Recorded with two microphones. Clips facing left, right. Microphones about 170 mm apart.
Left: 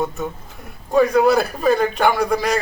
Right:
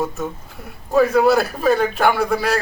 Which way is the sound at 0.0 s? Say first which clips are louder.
Even; centre (ahead or behind).